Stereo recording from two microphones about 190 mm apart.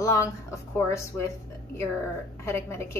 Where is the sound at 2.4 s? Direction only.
15° left (ahead or behind).